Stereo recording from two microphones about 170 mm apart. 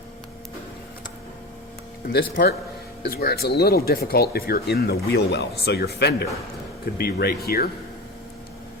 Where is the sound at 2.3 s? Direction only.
70° left (ahead or behind).